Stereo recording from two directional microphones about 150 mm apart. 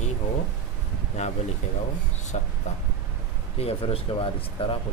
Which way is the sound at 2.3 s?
45° left (ahead or behind).